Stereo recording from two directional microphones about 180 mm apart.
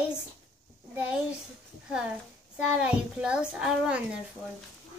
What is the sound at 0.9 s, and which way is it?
A child's voice, 5° right (ahead or behind).